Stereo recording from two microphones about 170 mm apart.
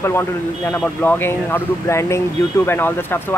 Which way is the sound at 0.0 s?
15° left (ahead or behind).